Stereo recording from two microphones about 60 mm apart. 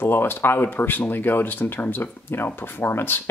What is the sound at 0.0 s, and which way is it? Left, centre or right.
Speech, left.